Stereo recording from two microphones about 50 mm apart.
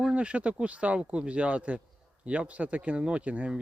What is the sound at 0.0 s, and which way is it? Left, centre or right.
Speech, right.